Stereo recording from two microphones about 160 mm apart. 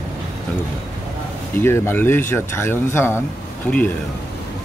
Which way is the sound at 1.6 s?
15° left (ahead or behind).